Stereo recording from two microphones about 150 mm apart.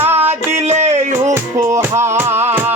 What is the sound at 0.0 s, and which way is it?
Music, 15° right (ahead or behind).